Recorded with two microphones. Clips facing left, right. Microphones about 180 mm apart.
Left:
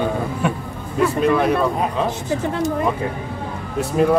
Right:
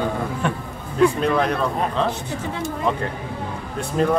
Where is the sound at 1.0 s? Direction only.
5° left (ahead or behind).